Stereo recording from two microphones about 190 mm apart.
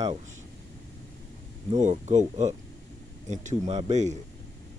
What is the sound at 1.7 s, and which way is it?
Speech, 40° right (ahead or behind).